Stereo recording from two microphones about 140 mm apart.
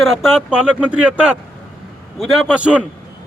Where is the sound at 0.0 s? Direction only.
Centre (ahead or behind).